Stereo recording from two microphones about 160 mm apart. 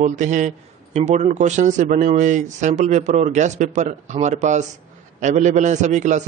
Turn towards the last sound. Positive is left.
turn(degrees=-50)  # may be behind; listen again after turning